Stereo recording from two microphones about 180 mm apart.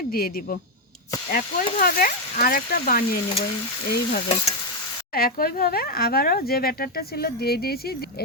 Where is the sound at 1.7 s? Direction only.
55° left (ahead or behind).